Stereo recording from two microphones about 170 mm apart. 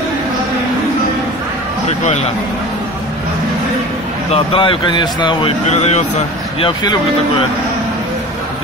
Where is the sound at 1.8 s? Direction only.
40° left (ahead or behind).